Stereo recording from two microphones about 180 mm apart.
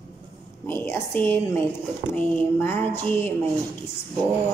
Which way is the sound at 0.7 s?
10° left (ahead or behind).